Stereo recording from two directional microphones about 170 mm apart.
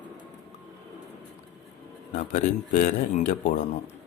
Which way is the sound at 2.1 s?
45° left (ahead or behind).